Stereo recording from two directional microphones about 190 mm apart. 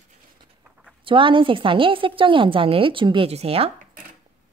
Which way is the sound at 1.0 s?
25° right (ahead or behind).